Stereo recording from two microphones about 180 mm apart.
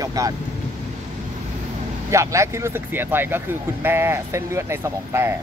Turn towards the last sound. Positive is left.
turn(degrees=-15)  # may be behind; listen again after turning